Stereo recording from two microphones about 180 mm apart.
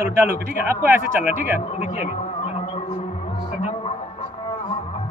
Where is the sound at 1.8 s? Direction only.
40° left (ahead or behind).